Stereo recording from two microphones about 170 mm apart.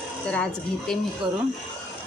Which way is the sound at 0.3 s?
5° left (ahead or behind).